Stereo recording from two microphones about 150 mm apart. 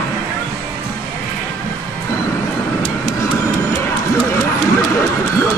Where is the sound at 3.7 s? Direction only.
15° left (ahead or behind).